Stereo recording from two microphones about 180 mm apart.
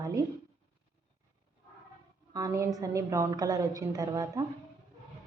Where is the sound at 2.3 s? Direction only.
15° right (ahead or behind).